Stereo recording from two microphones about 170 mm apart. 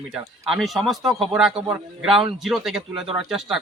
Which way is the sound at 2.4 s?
Centre (ahead or behind).